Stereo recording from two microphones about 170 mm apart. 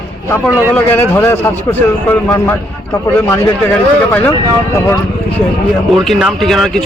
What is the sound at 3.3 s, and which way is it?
Speech, 10° left (ahead or behind).